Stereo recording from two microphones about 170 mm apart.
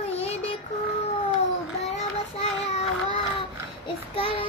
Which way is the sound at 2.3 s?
40° left (ahead or behind).